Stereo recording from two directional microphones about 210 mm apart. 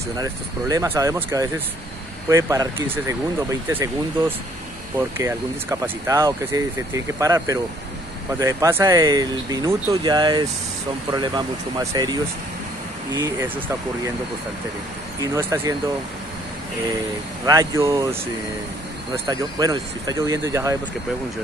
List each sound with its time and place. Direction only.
0.1 s speech: 15° right (ahead or behind)
5.1 s speech: 10° right (ahead or behind)
15.3 s speech: 10° right (ahead or behind)
17.5 s speech: 15° right (ahead or behind)
19.2 s speech: 20° right (ahead or behind)